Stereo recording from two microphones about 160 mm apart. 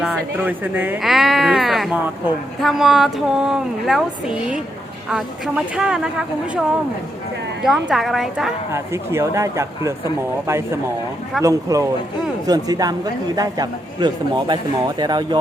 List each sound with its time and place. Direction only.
0.0 s speech: 10° right (ahead or behind)
8.7 s speech: 15° right (ahead or behind)
11.4 s a man's voice: 20° right (ahead or behind)